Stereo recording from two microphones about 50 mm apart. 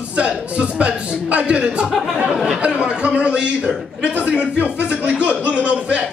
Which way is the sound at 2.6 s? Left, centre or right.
Right.